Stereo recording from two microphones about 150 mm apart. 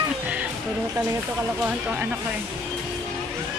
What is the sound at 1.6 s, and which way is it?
Speech, 10° right (ahead or behind).